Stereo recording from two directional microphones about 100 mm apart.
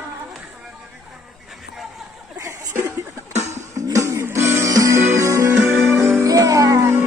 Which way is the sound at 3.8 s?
30° right (ahead or behind).